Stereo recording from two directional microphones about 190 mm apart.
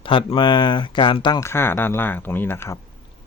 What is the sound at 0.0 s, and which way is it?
Speech, 25° left (ahead or behind).